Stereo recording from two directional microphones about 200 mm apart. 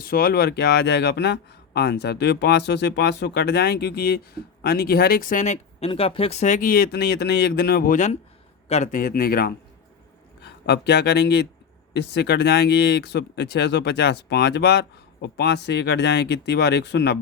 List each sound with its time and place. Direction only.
0.0 s speech: 50° left (ahead or behind)